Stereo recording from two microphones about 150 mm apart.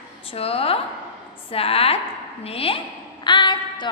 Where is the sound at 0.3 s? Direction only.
40° left (ahead or behind).